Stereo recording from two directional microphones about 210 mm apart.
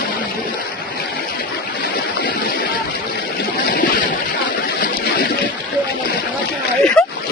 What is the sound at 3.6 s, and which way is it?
Boat, 40° left (ahead or behind).